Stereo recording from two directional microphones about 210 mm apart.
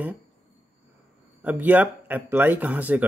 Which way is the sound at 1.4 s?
10° right (ahead or behind).